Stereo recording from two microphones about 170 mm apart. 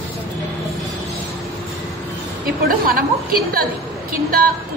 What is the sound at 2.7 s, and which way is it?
Speech, 60° right (ahead or behind).